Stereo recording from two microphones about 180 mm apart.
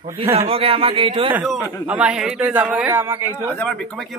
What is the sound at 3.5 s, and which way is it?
Speech, 10° left (ahead or behind).